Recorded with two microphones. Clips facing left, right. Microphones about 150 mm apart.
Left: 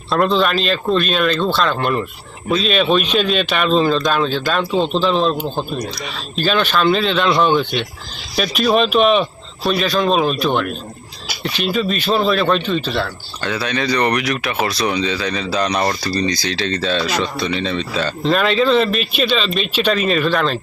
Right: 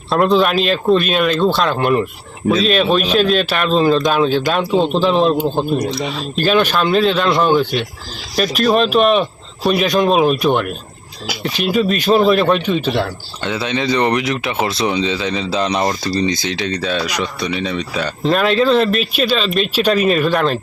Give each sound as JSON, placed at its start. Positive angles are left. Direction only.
{"t": 0.1, "sound": "speech", "side_deg": -10}
{"t": 6.1, "sound": "speech", "side_deg": -10}
{"t": 9.6, "sound": "speech", "side_deg": -15}